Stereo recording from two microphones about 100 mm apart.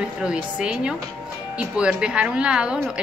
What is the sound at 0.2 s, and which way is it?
Speech, 10° right (ahead or behind).